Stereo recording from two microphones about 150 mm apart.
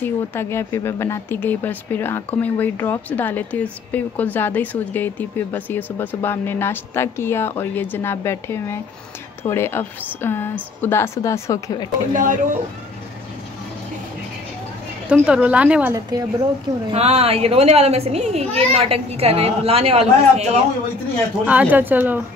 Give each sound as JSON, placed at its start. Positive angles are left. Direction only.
{"t": 0.0, "sound": "speech", "side_deg": 15}
{"t": 12.1, "sound": "speech", "side_deg": -60}
{"t": 15.0, "sound": "a woman's voice", "side_deg": -5}
{"t": 15.9, "sound": "a woman's voice", "side_deg": -25}
{"t": 16.9, "sound": "a child's voice", "side_deg": -45}
{"t": 21.5, "sound": "a woman's voice", "side_deg": -10}